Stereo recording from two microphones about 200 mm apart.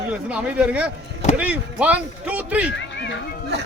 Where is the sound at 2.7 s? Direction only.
65° left (ahead or behind).